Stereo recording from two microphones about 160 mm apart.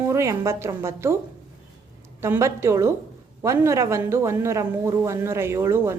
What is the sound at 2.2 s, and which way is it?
Speech, 15° right (ahead or behind).